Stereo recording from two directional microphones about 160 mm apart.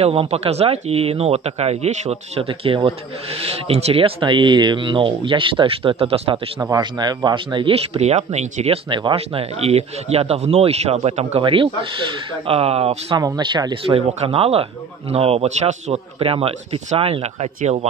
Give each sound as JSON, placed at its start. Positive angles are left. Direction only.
{"t": 0.0, "sound": "speech", "side_deg": -40}
{"t": 6.3, "sound": "a man's voice", "side_deg": -15}
{"t": 6.8, "sound": "speech", "side_deg": -25}
{"t": 8.9, "sound": "speech", "side_deg": -35}
{"t": 13.2, "sound": "speech", "side_deg": -25}